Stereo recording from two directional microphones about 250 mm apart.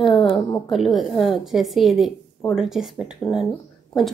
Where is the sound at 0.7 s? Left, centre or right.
Centre.